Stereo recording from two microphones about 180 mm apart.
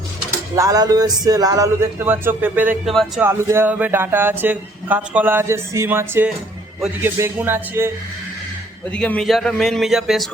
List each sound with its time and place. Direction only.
0.5 s speech: 20° right (ahead or behind)
8.9 s a man's voice: 5° left (ahead or behind)